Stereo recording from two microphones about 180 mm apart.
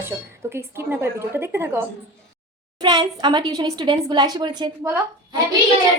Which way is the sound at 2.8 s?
25° right (ahead or behind).